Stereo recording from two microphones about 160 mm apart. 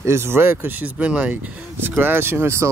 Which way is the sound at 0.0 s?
15° right (ahead or behind).